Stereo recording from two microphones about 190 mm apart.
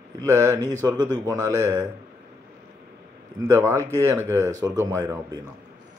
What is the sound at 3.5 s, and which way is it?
Speech, 15° right (ahead or behind).